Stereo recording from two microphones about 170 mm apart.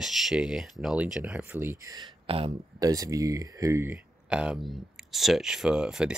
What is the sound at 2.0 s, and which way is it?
Speech, 35° right (ahead or behind).